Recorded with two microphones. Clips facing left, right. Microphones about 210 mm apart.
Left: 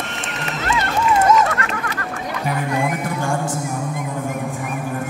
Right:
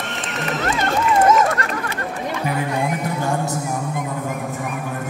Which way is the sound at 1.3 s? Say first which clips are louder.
Even; 50° right (ahead or behind).